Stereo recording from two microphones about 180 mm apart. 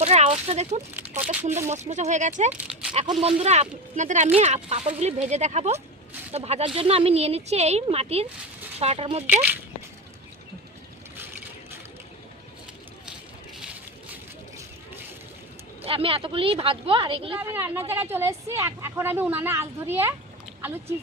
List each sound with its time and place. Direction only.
0.0 s speech: 35° right (ahead or behind)
2.5 s a sound: 5° right (ahead or behind)
2.9 s speech: 35° right (ahead or behind)
9.2 s speech: 10° right (ahead or behind)
15.8 s speech: 30° right (ahead or behind)
17.4 s speech: 15° right (ahead or behind)